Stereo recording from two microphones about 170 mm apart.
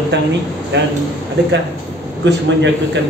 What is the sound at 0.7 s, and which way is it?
Speech, 90° right.